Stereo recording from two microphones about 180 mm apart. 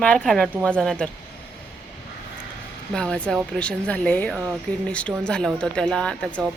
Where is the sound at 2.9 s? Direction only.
5° left (ahead or behind).